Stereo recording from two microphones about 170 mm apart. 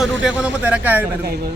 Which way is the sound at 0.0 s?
5° right (ahead or behind).